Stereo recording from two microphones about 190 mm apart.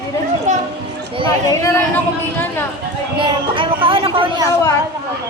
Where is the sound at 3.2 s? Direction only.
25° right (ahead or behind).